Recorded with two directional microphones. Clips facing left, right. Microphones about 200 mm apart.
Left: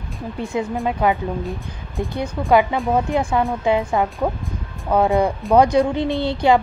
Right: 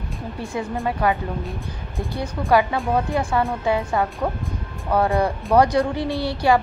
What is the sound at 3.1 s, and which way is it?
A woman's voice, 15° left (ahead or behind).